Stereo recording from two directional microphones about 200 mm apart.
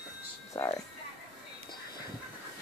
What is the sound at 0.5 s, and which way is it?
Music, 15° left (ahead or behind).